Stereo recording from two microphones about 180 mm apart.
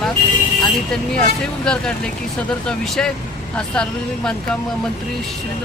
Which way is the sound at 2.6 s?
5° left (ahead or behind).